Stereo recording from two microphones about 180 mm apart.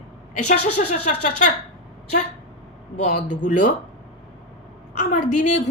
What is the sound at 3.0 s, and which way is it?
Speech, 45° left (ahead or behind).